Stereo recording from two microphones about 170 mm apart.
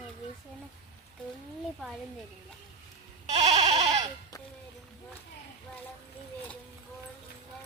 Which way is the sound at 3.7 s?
35° right (ahead or behind).